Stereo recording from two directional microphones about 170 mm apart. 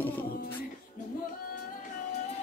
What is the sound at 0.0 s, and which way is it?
Music, 10° left (ahead or behind).